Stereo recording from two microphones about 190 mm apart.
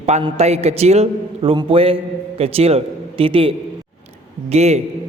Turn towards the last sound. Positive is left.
turn(degrees=-35)  # may be behind; listen again after turning